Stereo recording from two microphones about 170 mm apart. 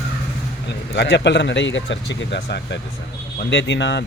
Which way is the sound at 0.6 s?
90° left.